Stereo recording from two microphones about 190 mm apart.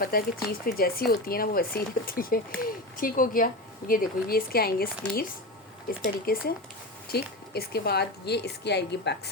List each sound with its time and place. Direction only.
0.0 s a woman's voice: 50° left (ahead or behind)